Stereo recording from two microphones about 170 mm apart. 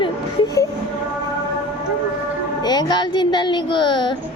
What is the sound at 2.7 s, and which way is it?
A child's voice, 25° left (ahead or behind).